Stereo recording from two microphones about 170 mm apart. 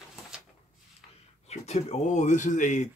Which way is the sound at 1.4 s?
40° left (ahead or behind).